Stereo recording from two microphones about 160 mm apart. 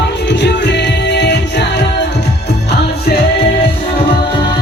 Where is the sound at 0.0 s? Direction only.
90° left.